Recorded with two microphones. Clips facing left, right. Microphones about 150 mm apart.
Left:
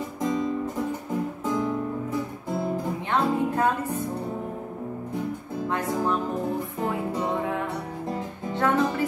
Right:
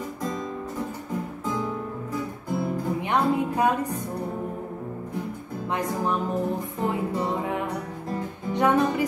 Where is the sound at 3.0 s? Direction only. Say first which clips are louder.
Right 1 dB; 15° right (ahead or behind).